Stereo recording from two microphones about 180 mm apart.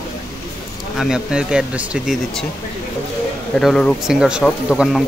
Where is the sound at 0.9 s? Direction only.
5° right (ahead or behind).